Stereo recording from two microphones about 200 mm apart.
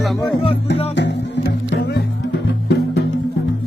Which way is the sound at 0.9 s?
60° left (ahead or behind).